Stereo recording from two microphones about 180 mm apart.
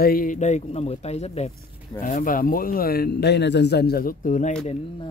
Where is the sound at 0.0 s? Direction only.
50° left (ahead or behind).